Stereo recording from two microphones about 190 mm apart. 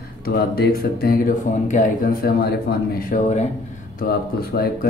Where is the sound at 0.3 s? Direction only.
55° left (ahead or behind); by 3.4 s 40° left (ahead or behind).